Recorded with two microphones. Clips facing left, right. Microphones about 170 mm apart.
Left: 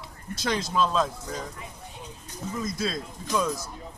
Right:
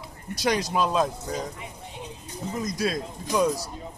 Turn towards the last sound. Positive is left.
turn(degrees=-15)  # may be behind; listen again after turning